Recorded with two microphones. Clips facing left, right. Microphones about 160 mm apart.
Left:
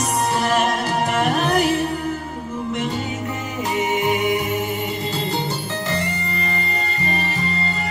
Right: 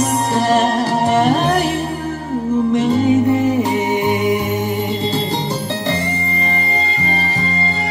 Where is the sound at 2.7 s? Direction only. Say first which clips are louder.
Right 13 dB; 35° right (ahead or behind).